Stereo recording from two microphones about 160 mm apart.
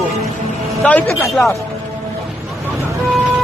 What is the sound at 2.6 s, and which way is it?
Vehicle, 15° right (ahead or behind).